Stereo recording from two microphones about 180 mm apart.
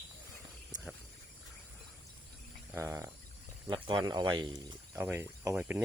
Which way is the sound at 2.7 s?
15° right (ahead or behind).